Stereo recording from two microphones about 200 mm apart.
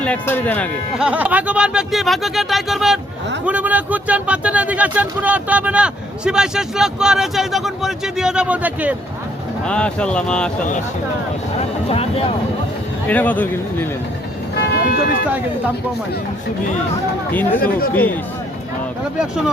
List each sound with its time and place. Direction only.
0.0 s speech: 10° left (ahead or behind)
0.9 s speech: 5° right (ahead or behind)
9.6 s speech: 5° left (ahead or behind)
13.1 s speech: 10° left (ahead or behind)
14.7 s speech: 50° left (ahead or behind)
17.6 s speech: 45° left (ahead or behind)
17.9 s speech: 10° left (ahead or behind)